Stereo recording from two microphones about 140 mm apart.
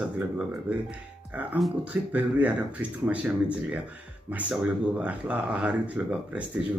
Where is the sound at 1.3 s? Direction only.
10° right (ahead or behind).